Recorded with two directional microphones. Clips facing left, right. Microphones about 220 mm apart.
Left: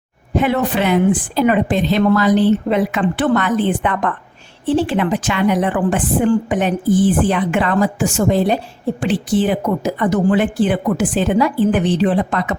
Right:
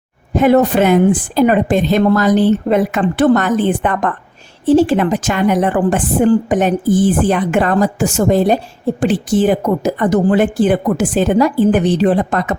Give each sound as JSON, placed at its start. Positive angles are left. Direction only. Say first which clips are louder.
{"t": 0.3, "sound": "a woman's voice", "louder": "right 6 dB", "side_deg": -45}